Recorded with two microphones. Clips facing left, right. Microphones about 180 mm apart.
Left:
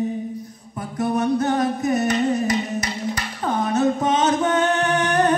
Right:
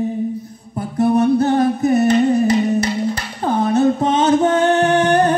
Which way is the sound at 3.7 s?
30° right (ahead or behind).